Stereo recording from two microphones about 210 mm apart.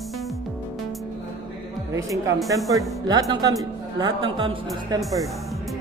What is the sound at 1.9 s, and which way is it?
Music, 15° right (ahead or behind).